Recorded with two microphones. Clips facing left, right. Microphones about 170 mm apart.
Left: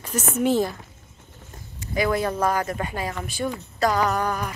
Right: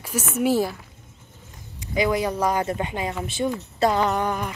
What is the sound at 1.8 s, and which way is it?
Speech, 15° right (ahead or behind).